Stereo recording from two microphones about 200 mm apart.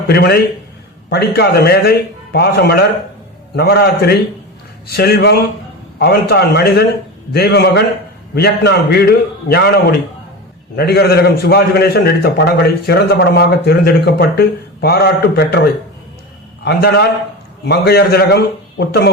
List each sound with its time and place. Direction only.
0.1 s a man's voice: 55° left (ahead or behind)